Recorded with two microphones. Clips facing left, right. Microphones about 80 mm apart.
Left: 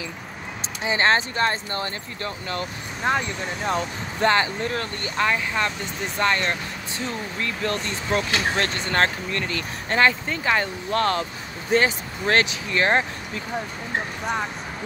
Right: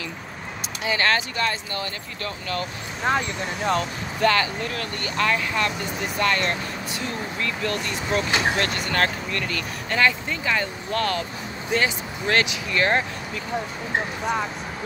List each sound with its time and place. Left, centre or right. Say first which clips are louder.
0.8 s speech: left 2 dB; left
3.0 s speech: even; centre
4.2 s speech: left 1 dB; left